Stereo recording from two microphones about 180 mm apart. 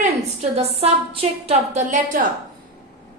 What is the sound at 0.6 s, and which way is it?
A woman's voice, 35° right (ahead or behind).